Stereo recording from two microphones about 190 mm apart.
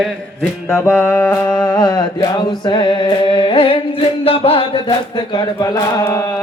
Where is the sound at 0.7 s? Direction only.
10° left (ahead or behind).